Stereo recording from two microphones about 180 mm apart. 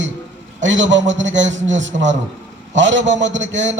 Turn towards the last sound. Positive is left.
turn(degrees=-90)